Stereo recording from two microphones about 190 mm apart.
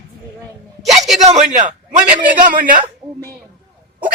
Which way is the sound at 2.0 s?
10° right (ahead or behind).